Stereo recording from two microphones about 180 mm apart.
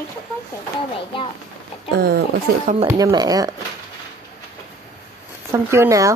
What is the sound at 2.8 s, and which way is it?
Speech, 20° right (ahead or behind).